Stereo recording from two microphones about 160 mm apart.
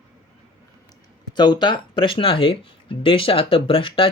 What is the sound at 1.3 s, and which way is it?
Speech, 25° left (ahead or behind).